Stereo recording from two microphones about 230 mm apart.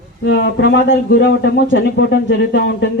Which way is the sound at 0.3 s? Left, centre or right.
Left.